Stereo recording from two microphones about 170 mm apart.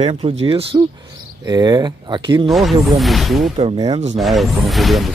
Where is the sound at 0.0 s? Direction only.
40° right (ahead or behind).